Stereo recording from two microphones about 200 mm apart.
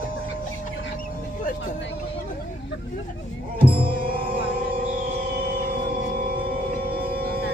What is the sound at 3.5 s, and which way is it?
Music, 25° right (ahead or behind).